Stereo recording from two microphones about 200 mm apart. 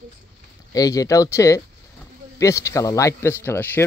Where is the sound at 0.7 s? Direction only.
15° left (ahead or behind).